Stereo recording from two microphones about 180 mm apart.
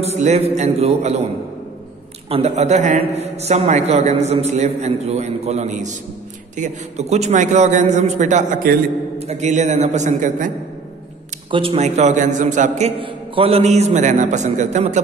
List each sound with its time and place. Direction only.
0.0 s a man's voice: 35° right (ahead or behind)
2.2 s a man's voice: 35° right (ahead or behind)
11.5 s a man's voice: 30° right (ahead or behind)